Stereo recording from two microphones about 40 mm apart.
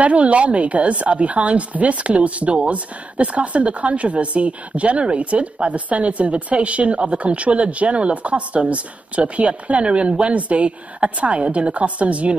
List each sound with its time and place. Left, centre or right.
0.0 s a woman's voice: right